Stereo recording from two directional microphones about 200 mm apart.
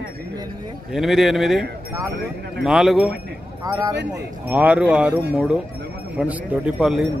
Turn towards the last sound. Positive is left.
turn(degrees=0)  # may be behind; listen again after turning